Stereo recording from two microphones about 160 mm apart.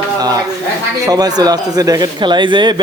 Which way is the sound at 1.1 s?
25° right (ahead or behind).